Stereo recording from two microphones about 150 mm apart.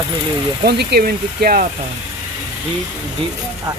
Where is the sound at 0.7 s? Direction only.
90° right; by 1.7 s 75° right (ahead or behind).